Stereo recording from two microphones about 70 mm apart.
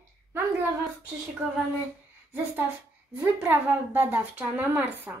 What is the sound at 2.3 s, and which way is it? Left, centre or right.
A woman's voice, right.